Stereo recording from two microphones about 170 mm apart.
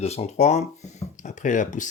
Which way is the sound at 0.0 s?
40° left (ahead or behind).